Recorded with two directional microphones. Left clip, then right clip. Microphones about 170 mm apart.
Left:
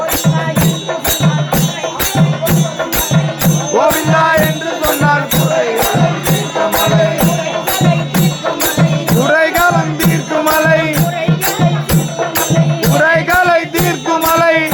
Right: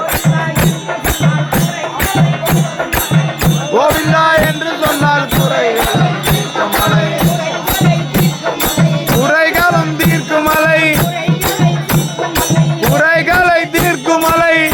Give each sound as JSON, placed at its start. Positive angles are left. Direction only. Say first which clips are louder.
{"t": 3.8, "sound": "music", "louder": "even", "side_deg": -10}
{"t": 9.3, "sound": "music", "louder": "even", "side_deg": -5}
{"t": 13.0, "sound": "music", "louder": "even", "side_deg": -20}